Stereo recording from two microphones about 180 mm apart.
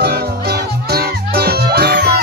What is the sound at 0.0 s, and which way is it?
Music, 60° right (ahead or behind).